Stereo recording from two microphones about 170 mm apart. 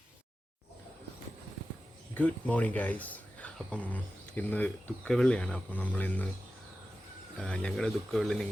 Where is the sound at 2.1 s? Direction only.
10° left (ahead or behind).